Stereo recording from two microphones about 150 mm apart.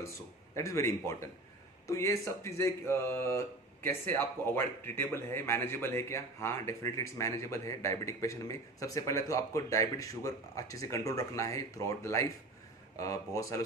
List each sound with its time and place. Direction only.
0.6 s speech: 20° left (ahead or behind)